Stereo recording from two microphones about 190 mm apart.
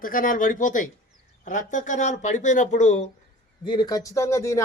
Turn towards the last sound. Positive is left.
turn(degrees=15)  # may be behind; listen again after turning